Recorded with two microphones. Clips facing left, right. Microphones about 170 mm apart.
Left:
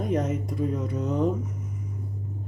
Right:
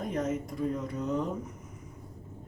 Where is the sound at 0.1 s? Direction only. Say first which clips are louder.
Left 5 dB; 70° left (ahead or behind).